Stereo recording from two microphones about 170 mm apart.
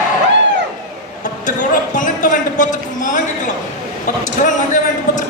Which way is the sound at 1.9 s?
50° left (ahead or behind).